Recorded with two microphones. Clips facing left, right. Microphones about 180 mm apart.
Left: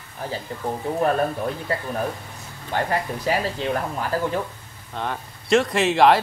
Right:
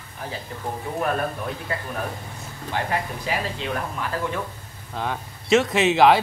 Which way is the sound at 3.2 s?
35° left (ahead or behind).